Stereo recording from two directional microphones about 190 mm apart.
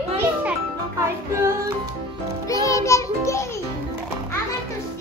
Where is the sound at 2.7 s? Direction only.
15° left (ahead or behind).